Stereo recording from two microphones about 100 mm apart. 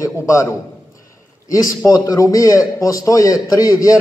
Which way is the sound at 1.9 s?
40° left (ahead or behind).